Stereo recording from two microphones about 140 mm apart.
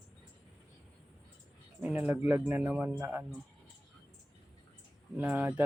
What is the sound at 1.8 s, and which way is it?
Speech, 10° right (ahead or behind).